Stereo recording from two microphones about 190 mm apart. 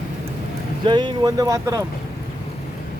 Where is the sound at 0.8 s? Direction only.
25° right (ahead or behind).